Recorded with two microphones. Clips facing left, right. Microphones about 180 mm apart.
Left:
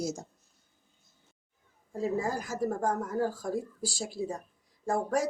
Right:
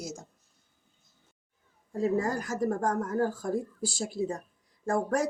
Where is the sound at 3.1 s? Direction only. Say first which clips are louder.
Right 2 dB; 55° right (ahead or behind).